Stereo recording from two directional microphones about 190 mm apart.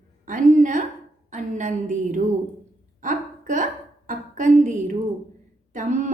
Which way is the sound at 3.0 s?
45° right (ahead or behind).